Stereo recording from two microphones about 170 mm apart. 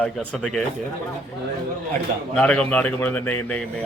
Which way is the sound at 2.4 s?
5° left (ahead or behind).